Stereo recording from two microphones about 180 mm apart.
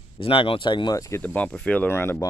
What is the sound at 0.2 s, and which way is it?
Speech, 30° left (ahead or behind).